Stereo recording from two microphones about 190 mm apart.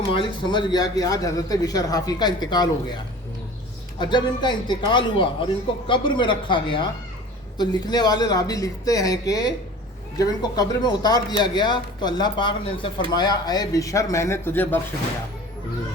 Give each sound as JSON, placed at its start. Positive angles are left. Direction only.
{"t": 0.1, "sound": "a man's voice", "side_deg": 25}